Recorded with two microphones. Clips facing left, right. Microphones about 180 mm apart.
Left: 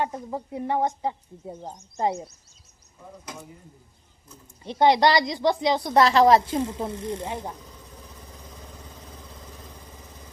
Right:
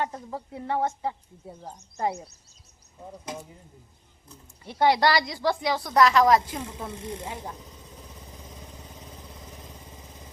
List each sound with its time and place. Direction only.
0.0 s speech: 15° left (ahead or behind)
4.6 s speech: 20° left (ahead or behind)